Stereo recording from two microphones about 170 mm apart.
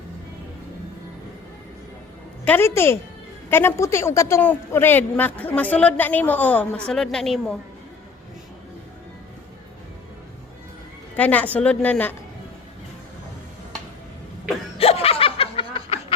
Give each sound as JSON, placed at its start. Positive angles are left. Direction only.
{"t": 2.4, "sound": "speech", "side_deg": 10}
{"t": 11.2, "sound": "speech", "side_deg": 10}
{"t": 14.8, "sound": "snicker", "side_deg": 35}